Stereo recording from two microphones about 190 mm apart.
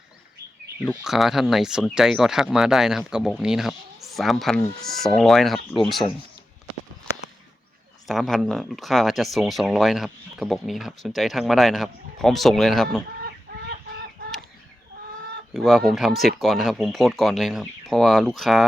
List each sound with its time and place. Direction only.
1.0 s speech: centre (ahead or behind)
8.0 s speech: centre (ahead or behind)
13.2 s chicken: 55° right (ahead or behind)
15.5 s speech: centre (ahead or behind)